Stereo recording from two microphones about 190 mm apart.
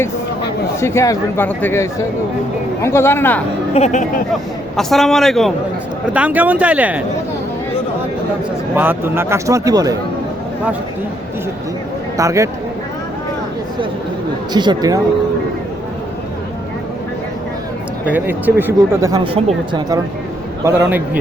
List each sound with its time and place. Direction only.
0.8 s speech: 15° left (ahead or behind)
3.8 s speech: 40° left (ahead or behind)
4.8 s a man's voice: centre (ahead or behind)
8.7 s speech: 10° right (ahead or behind)
12.1 s speech: 15° right (ahead or behind)
14.5 s speech: 25° right (ahead or behind)
18.0 s speech: 10° right (ahead or behind); by 20.0 s 25° right (ahead or behind)
20.7 s speech: 15° right (ahead or behind)